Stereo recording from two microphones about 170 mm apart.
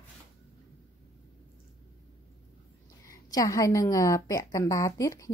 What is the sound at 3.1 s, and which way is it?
A woman's voice, 20° left (ahead or behind).